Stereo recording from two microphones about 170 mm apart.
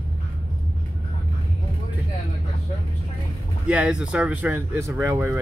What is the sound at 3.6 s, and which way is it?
Speech, 5° right (ahead or behind).